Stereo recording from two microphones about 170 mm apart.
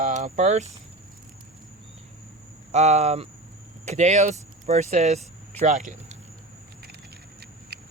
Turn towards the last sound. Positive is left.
turn(degrees=-70)  # may be behind; listen again after turning